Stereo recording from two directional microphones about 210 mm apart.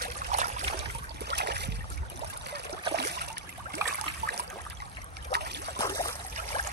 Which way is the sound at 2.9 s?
50° right (ahead or behind).